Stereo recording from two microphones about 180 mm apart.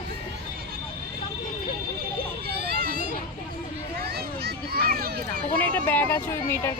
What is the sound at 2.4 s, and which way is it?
Children playing, 60° right (ahead or behind).